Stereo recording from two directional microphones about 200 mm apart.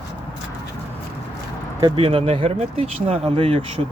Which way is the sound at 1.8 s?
25° right (ahead or behind).